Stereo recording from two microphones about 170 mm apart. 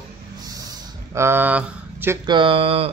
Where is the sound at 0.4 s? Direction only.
20° right (ahead or behind).